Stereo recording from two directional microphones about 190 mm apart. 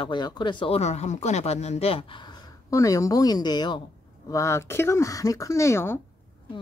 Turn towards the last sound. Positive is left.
turn(degrees=15)  # may be behind; listen again after turning